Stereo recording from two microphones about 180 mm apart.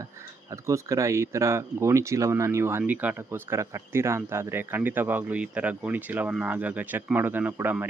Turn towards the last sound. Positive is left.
turn(degrees=-10)  # may be behind; listen again after turning